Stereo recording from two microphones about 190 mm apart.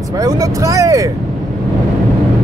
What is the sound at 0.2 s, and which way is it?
Speech, 20° right (ahead or behind).